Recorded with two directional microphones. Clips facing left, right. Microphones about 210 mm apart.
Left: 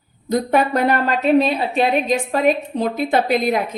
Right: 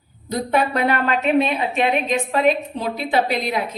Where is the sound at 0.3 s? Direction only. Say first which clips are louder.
Left 3 dB; 45° left (ahead or behind).